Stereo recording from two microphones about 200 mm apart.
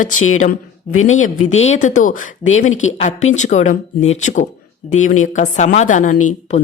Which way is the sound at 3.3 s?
35° left (ahead or behind).